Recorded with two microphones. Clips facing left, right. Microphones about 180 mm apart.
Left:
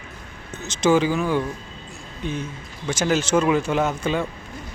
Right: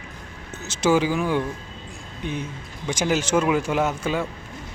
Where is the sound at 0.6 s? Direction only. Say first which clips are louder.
Left 2 dB; 10° right (ahead or behind).